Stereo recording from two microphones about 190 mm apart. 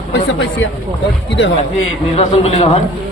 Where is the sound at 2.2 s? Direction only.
30° left (ahead or behind).